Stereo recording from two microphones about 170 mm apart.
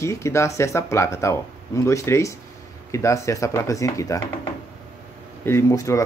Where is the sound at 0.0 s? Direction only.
15° left (ahead or behind).